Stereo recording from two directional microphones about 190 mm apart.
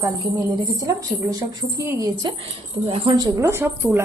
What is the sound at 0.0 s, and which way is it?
Speech, 20° right (ahead or behind).